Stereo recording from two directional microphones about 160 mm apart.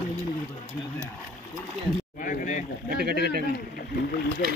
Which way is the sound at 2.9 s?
80° right.